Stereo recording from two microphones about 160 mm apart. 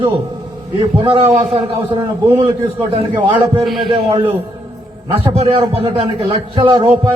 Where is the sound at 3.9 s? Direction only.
35° right (ahead or behind).